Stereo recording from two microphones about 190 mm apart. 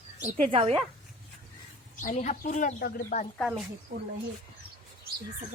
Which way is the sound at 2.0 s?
40° left (ahead or behind).